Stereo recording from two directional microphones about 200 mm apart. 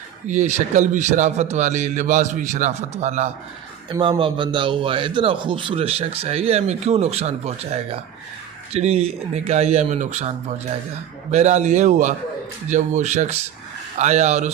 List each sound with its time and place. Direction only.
0.3 s a man's voice: 35° right (ahead or behind)
3.8 s a man's voice: 20° right (ahead or behind)